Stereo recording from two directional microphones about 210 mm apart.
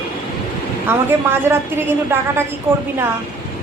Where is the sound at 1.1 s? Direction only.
10° right (ahead or behind).